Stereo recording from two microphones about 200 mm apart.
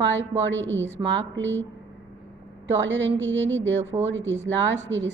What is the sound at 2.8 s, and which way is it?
Speech, 65° right (ahead or behind).